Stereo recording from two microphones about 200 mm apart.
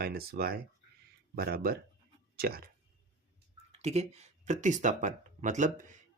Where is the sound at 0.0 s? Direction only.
50° right (ahead or behind).